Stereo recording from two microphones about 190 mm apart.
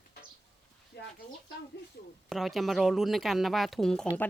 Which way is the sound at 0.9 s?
65° left (ahead or behind).